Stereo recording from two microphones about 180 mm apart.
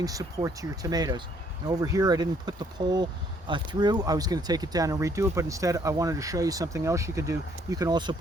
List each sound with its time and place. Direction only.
0.0 s speech: 20° right (ahead or behind)